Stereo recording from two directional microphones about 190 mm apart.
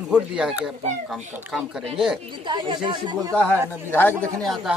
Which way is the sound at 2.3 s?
25° right (ahead or behind).